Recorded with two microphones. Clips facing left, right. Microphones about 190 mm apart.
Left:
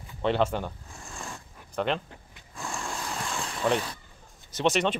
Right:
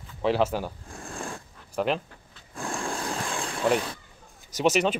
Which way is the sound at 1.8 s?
5° right (ahead or behind).